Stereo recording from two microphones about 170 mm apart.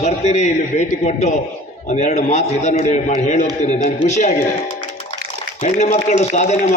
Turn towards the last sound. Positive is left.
turn(degrees=45)  # may be behind; listen again after turning